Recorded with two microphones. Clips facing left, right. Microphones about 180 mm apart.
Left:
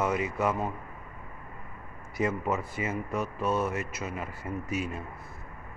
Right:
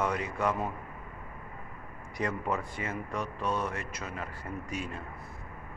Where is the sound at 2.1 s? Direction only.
5° left (ahead or behind).